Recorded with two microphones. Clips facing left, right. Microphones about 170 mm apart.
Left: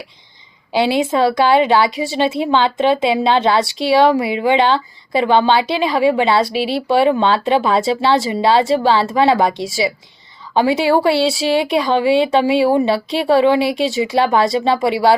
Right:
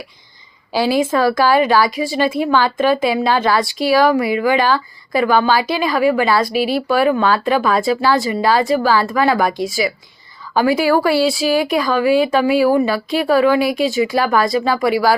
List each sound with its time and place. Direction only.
0.7 s a woman's voice: 20° left (ahead or behind)